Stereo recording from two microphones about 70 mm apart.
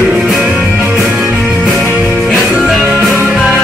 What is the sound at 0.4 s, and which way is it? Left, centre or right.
Music, centre.